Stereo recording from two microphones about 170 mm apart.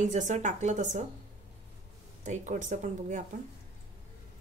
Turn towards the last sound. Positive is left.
turn(degrees=-45)  # may be behind; listen again after turning